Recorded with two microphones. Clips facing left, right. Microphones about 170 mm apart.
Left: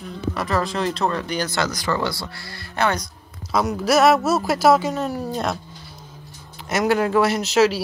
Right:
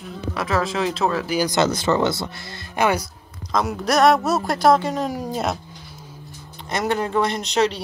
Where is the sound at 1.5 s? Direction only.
25° right (ahead or behind).